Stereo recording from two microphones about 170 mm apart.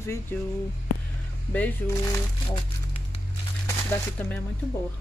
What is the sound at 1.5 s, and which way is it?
Speech, 10° left (ahead or behind).